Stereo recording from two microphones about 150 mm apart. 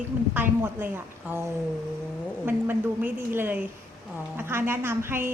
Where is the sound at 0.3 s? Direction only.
15° right (ahead or behind).